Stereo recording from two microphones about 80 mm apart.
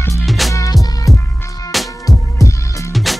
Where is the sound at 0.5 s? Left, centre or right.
Left.